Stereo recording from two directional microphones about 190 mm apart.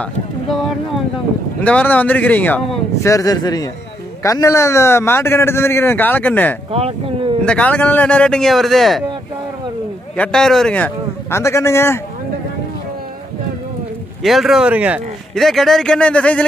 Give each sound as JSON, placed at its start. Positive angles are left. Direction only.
{"t": 0.0, "sound": "a man's voice", "side_deg": 0}
{"t": 6.7, "sound": "speech", "side_deg": -30}
{"t": 7.4, "sound": "speech", "side_deg": 5}
{"t": 10.1, "sound": "a man's voice", "side_deg": 5}
{"t": 14.2, "sound": "speech", "side_deg": 0}